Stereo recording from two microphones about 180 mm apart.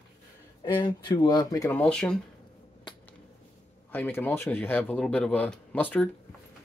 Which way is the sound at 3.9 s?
10° left (ahead or behind).